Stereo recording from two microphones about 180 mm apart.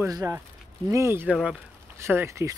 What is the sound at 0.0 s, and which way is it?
Speech, 15° right (ahead or behind).